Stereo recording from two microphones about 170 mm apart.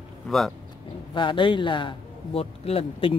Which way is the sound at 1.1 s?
30° left (ahead or behind).